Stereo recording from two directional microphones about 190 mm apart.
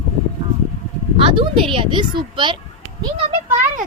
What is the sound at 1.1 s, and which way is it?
Speech, 25° right (ahead or behind).